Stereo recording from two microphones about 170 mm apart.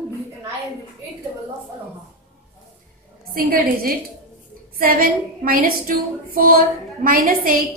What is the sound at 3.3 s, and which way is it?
A woman's voice, 60° right (ahead or behind).